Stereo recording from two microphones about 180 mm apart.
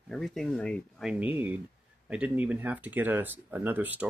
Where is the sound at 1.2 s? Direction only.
10° right (ahead or behind).